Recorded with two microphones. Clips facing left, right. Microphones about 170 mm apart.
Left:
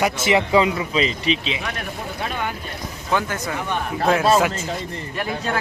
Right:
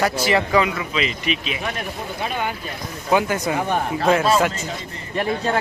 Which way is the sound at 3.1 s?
15° right (ahead or behind).